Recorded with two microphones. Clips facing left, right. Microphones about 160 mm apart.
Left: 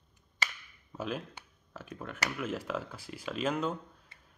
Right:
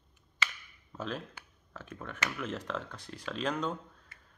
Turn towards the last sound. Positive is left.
turn(degrees=5)  # may be behind; listen again after turning